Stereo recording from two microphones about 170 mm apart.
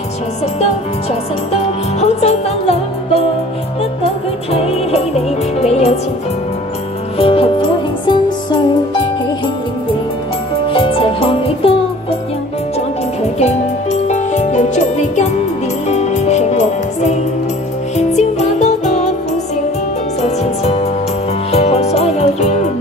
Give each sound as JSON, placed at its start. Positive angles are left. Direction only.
{"t": 1.5, "sound": "music", "side_deg": 40}
{"t": 4.5, "sound": "music", "side_deg": 35}
{"t": 7.2, "sound": "music", "side_deg": 35}
{"t": 10.7, "sound": "music", "side_deg": 30}
{"t": 13.4, "sound": "music", "side_deg": 40}
{"t": 20.2, "sound": "music", "side_deg": 40}